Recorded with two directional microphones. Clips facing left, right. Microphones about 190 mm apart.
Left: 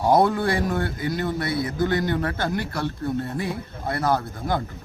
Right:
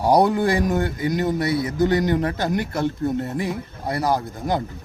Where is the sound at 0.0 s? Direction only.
15° right (ahead or behind).